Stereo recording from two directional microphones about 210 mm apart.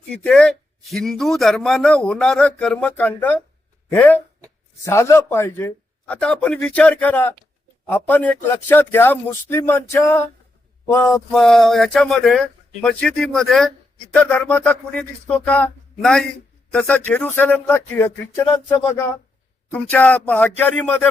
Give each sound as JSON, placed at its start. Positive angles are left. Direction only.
{"t": 0.1, "sound": "a man's voice", "side_deg": 5}